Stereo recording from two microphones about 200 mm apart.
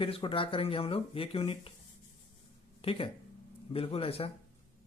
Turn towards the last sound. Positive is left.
turn(degrees=30)  # may be behind; listen again after turning